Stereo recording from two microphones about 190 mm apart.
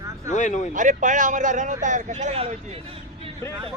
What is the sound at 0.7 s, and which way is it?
A man's voice, 40° right (ahead or behind).